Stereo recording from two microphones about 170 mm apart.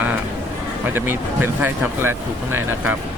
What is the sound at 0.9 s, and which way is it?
Speech, 10° right (ahead or behind).